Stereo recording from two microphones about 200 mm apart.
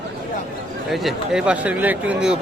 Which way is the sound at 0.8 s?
Centre (ahead or behind).